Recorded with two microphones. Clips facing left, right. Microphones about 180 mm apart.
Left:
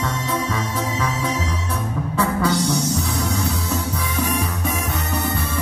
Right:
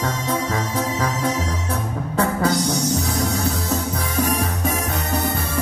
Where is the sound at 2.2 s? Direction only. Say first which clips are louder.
Right 1 dB; 45° right (ahead or behind).